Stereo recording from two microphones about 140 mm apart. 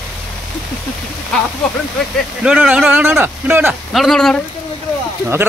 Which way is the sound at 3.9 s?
Centre (ahead or behind).